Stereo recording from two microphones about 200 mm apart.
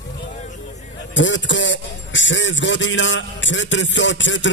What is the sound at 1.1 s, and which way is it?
A man's voice, 70° left (ahead or behind).